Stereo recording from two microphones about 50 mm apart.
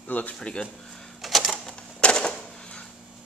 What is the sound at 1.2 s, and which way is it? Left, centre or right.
Typewriter, centre.